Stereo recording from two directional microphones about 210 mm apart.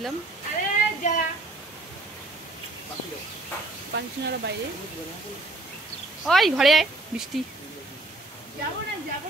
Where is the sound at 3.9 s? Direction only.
55° right (ahead or behind).